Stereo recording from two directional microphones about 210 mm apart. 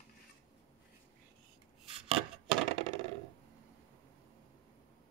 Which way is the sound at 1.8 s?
25° right (ahead or behind).